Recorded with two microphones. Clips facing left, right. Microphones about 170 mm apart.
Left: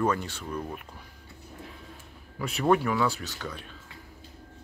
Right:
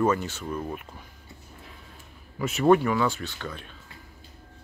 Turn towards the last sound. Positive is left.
turn(degrees=0)  # may be behind; listen again after turning